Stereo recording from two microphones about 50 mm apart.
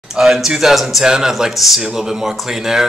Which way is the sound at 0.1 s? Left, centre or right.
Centre.